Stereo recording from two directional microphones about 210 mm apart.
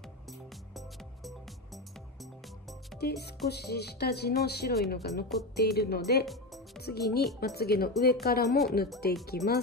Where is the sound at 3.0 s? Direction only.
50° left (ahead or behind).